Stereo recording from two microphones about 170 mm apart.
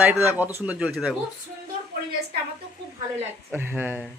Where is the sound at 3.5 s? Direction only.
10° right (ahead or behind).